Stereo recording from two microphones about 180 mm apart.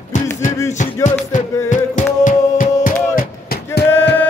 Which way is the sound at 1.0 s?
40° left (ahead or behind).